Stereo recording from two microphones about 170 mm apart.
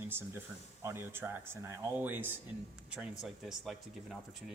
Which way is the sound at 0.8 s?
15° right (ahead or behind).